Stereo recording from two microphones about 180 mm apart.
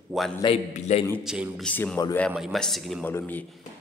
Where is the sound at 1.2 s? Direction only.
5° right (ahead or behind).